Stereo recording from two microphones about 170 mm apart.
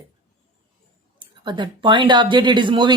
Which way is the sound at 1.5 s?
25° right (ahead or behind).